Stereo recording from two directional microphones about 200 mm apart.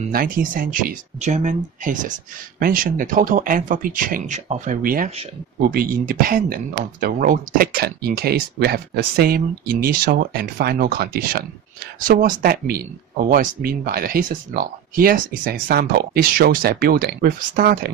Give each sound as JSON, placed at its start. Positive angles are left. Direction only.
{"t": 0.1, "sound": "speech", "side_deg": -45}